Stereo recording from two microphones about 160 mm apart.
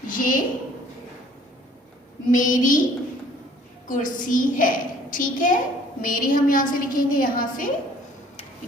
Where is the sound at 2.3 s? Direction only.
55° left (ahead or behind).